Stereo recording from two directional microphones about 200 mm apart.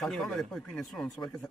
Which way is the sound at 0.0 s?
Centre (ahead or behind).